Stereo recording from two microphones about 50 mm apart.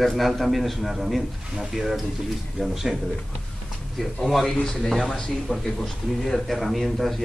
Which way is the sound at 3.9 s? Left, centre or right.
Centre.